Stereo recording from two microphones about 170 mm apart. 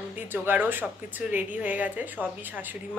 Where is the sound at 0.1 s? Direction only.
10° right (ahead or behind).